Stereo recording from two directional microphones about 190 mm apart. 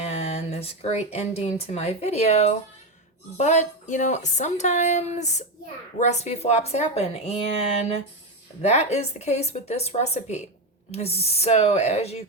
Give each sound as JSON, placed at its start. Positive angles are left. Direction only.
{"t": 0.0, "sound": "a woman's voice", "side_deg": 35}